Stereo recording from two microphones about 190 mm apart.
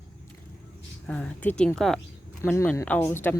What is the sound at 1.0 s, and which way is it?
Speech, 5° left (ahead or behind).